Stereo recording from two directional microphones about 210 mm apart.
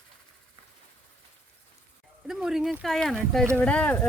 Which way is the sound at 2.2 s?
Centre (ahead or behind).